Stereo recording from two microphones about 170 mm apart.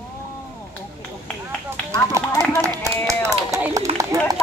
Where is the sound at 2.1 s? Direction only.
20° right (ahead or behind).